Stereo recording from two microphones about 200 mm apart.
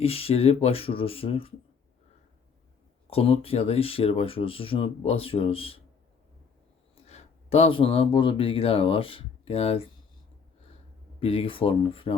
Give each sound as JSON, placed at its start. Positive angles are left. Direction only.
{"t": 0.0, "sound": "speech", "side_deg": 30}
{"t": 3.1, "sound": "speech", "side_deg": 30}
{"t": 6.9, "sound": "speech", "side_deg": 30}
{"t": 11.2, "sound": "speech", "side_deg": 30}